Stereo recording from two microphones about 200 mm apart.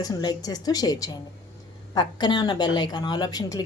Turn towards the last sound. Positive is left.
turn(degrees=20)  # may be behind; listen again after turning